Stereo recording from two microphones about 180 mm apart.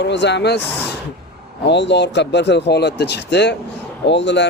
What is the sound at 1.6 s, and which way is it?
A man's voice, 75° left (ahead or behind).